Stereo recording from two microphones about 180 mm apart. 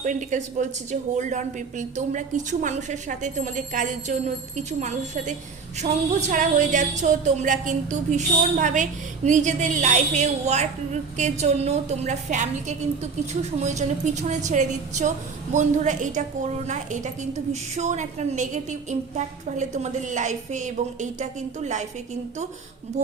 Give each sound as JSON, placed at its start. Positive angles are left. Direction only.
{"t": 0.0, "sound": "a woman's voice", "side_deg": -45}
{"t": 23.0, "sound": "a woman's voice", "side_deg": -35}